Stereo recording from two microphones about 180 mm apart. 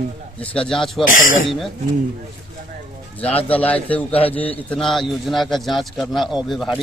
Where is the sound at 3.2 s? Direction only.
10° left (ahead or behind).